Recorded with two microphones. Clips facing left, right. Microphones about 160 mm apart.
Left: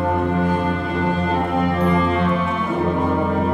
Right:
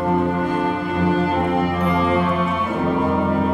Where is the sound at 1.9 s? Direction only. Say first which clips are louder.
Even; 5° right (ahead or behind).